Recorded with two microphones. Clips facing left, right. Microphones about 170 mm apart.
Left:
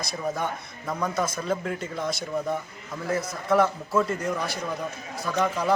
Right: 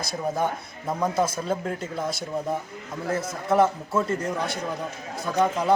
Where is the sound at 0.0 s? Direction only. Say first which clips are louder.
Right 3 dB; 30° right (ahead or behind).